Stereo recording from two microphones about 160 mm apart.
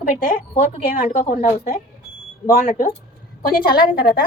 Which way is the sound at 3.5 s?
65° left (ahead or behind).